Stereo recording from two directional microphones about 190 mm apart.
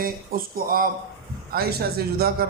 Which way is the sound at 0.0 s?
50° right (ahead or behind).